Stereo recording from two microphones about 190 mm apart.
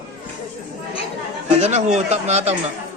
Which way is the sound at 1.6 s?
35° right (ahead or behind).